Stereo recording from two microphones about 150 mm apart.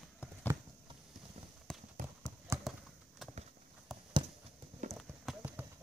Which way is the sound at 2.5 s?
20° right (ahead or behind).